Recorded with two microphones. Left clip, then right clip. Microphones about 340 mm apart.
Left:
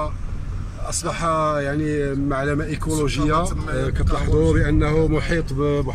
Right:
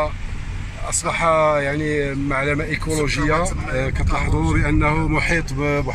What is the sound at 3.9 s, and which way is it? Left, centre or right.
Speech, right.